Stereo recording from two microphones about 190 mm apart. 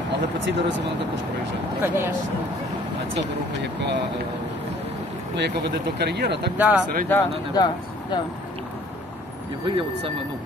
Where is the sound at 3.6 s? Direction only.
65° right (ahead or behind).